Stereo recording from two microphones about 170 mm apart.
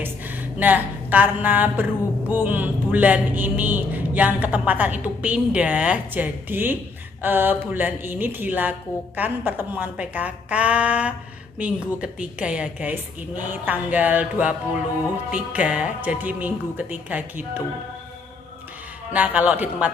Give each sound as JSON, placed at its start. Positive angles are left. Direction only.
{"t": 0.0, "sound": "a woman's voice", "side_deg": -10}
{"t": 19.1, "sound": "a woman's voice", "side_deg": -10}